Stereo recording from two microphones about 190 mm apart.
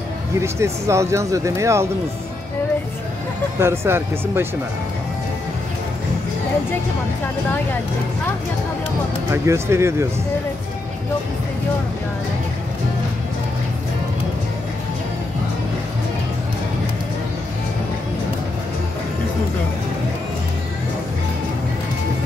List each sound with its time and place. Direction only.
0.4 s speech: 15° right (ahead or behind)
3.5 s speech: 15° right (ahead or behind)
9.3 s speech: 15° right (ahead or behind)